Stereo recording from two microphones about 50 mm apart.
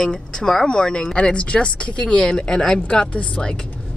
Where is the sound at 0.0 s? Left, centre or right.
Centre.